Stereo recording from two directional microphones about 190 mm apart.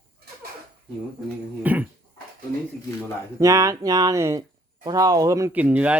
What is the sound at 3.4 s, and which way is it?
Speech, 15° right (ahead or behind).